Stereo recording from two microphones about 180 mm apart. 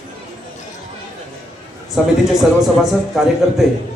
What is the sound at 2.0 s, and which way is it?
Speech, centre (ahead or behind).